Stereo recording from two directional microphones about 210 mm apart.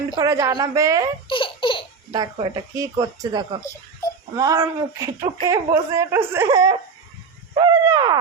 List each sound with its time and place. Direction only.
0.2 s speech: 15° right (ahead or behind)
1.3 s laughter: 25° left (ahead or behind)
2.1 s speech: 20° right (ahead or behind)
7.6 s a sound: 20° right (ahead or behind)